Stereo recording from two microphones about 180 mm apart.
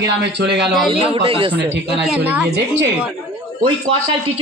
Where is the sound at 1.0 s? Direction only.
30° right (ahead or behind).